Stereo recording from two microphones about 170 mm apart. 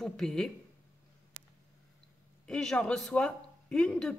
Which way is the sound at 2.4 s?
5° left (ahead or behind).